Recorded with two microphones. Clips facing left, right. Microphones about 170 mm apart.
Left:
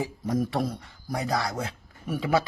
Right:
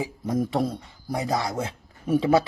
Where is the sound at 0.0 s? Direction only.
20° right (ahead or behind).